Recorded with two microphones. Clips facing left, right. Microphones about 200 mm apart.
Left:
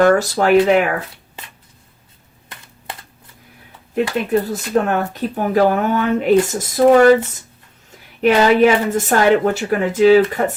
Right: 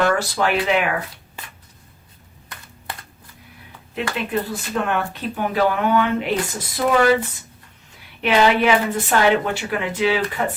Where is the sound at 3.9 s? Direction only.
45° left (ahead or behind).